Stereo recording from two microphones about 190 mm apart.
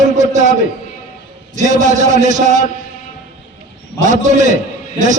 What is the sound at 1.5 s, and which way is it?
A man's voice, 40° right (ahead or behind).